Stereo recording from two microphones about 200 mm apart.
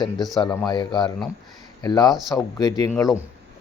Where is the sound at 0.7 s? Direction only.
20° left (ahead or behind).